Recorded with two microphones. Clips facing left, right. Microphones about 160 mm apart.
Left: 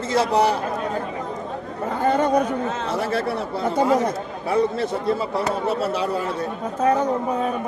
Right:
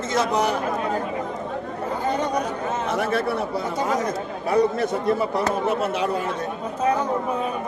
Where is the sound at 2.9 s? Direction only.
35° left (ahead or behind).